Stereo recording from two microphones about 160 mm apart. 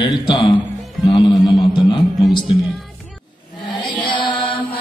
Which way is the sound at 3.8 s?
30° left (ahead or behind).